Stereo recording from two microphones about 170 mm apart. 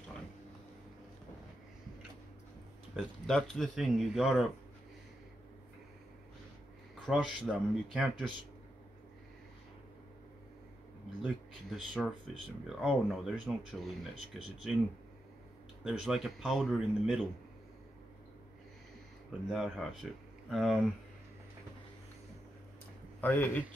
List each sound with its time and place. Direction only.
3.0 s speech: 5° left (ahead or behind)
7.1 s speech: centre (ahead or behind)
11.2 s speech: centre (ahead or behind)
15.8 s speech: 5° right (ahead or behind)
19.5 s speech: centre (ahead or behind)
23.2 s a man's voice: 10° left (ahead or behind)